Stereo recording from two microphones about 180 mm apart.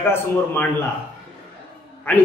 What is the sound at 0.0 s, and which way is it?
Speech, 10° left (ahead or behind).